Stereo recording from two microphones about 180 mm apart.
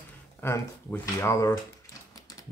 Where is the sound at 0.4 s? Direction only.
10° left (ahead or behind).